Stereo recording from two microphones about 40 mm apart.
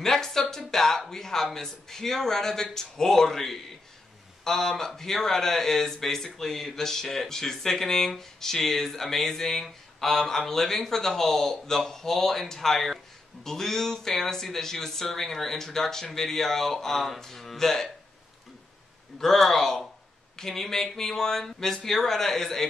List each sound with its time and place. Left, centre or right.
0.0 s speech: centre
19.1 s speech: centre